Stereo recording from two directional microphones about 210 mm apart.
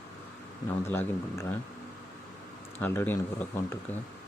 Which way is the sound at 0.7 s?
10° left (ahead or behind).